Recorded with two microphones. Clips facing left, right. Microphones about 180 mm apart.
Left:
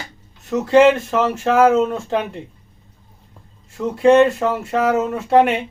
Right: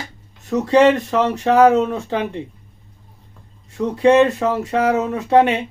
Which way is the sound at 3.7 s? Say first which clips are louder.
Left 1 dB; centre (ahead or behind).